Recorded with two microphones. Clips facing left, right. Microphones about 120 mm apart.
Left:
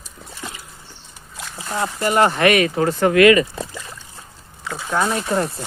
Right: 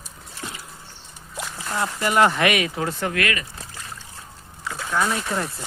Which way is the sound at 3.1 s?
15° left (ahead or behind).